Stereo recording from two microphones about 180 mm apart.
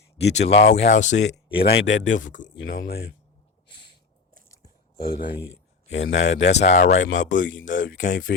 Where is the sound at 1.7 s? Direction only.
80° left.